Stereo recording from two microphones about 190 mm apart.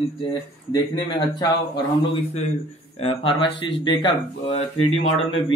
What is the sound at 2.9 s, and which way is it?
A man's voice, 30° left (ahead or behind).